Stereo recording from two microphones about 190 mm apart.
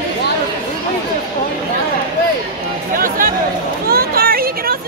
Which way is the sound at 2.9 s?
45° right (ahead or behind).